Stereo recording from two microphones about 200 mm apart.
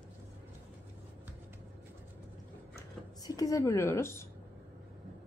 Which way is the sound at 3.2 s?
15° left (ahead or behind).